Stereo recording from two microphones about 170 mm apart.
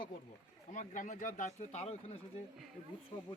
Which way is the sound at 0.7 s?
50° left (ahead or behind).